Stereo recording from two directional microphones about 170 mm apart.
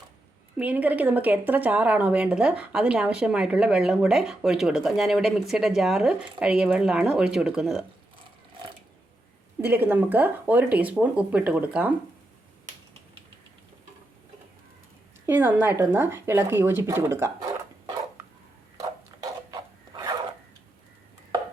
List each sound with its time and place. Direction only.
0.5 s speech: 10° right (ahead or behind)
9.6 s speech: 10° right (ahead or behind)
15.3 s speech: 10° right (ahead or behind)
18.8 s a sound: 20° right (ahead or behind)